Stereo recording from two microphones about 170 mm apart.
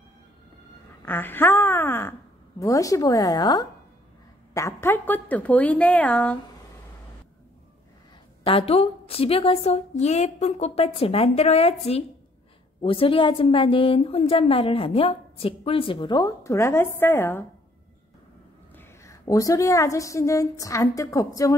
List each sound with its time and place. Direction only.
1.0 s a woman's voice: 10° left (ahead or behind)
8.5 s a woman's voice: 35° left (ahead or behind); by 17.5 s 15° left (ahead or behind)
18.8 s a woman's voice: 20° left (ahead or behind)